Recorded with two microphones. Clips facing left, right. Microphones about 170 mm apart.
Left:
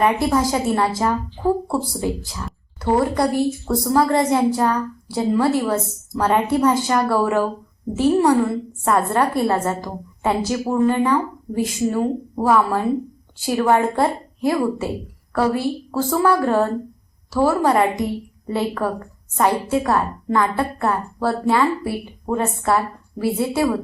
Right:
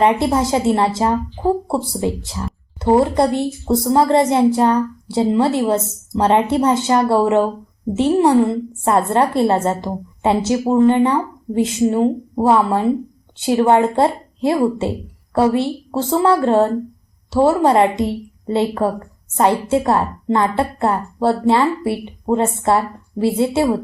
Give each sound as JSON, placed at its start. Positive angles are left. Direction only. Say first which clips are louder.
{"t": 0.0, "sound": "a woman's voice", "louder": "right 2 dB", "side_deg": -25}